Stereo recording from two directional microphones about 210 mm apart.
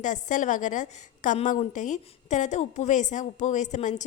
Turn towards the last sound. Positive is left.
turn(degrees=35)  # may be behind; listen again after turning